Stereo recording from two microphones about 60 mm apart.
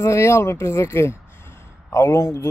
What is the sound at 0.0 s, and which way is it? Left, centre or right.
A man's voice, left.